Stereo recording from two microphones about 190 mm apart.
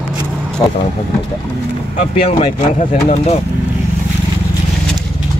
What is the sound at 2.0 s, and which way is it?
Speech, 35° left (ahead or behind).